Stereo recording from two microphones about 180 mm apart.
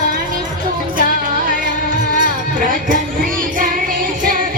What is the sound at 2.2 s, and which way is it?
Music, 50° right (ahead or behind).